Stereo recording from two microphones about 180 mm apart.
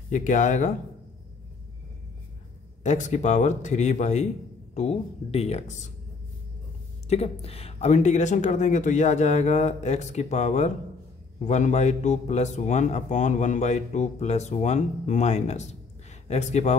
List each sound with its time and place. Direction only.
0.1 s speech: 45° left (ahead or behind)
2.8 s a man's voice: 40° left (ahead or behind)
7.1 s a man's voice: 35° left (ahead or behind)